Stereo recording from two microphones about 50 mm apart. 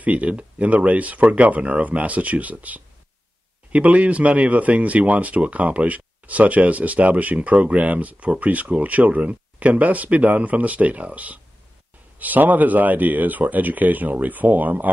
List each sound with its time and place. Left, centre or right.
0.0 s speech: right